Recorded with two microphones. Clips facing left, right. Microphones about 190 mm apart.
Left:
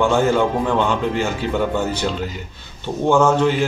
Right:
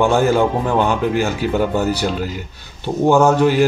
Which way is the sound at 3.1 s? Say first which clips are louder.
Right 2 dB; 5° right (ahead or behind).